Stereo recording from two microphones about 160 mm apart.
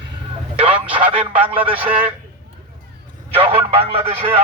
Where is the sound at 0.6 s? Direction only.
10° right (ahead or behind).